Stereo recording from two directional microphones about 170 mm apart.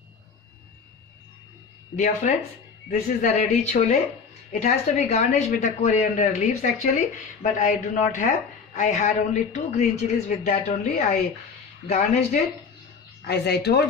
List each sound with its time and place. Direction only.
2.2 s a woman's voice: 45° left (ahead or behind)
11.9 s a woman's voice: 40° left (ahead or behind)
13.3 s speech: 75° left (ahead or behind)